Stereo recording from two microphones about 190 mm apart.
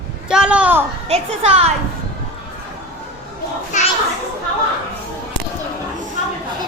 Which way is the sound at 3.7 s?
40° left (ahead or behind).